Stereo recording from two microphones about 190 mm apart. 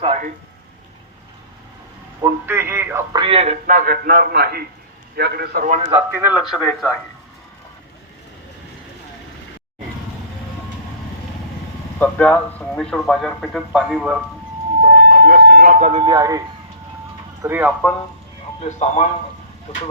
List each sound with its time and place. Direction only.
2.2 s speech: 15° right (ahead or behind)
3.2 s speech: 30° right (ahead or behind)
3.8 s a man's voice: 50° right (ahead or behind)
6.1 s speech: 5° right (ahead or behind)
11.9 s speech: 5° left (ahead or behind)
14.8 s vehicle: 45° right (ahead or behind)
15.8 s speech: 30° right (ahead or behind)
17.4 s speech: 10° right (ahead or behind)
18.6 s speech: 35° left (ahead or behind)